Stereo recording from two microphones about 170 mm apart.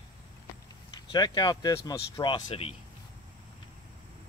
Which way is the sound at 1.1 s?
25° left (ahead or behind).